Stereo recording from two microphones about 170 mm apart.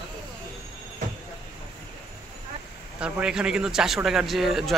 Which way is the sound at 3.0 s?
5° right (ahead or behind).